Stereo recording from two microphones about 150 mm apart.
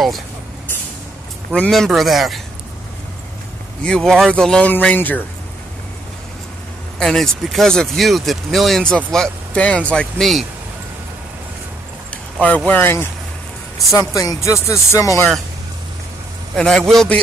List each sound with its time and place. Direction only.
1.5 s speech: 5° left (ahead or behind)
3.8 s speech: 5° left (ahead or behind)
7.0 s speech: centre (ahead or behind)
12.1 s speech: 10° left (ahead or behind)
16.5 s speech: 5° left (ahead or behind)